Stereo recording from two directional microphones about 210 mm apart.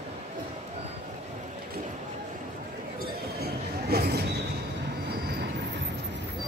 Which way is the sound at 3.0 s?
45° right (ahead or behind).